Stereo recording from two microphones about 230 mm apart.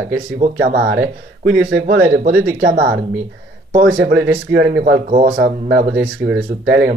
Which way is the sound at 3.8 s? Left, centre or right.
Right.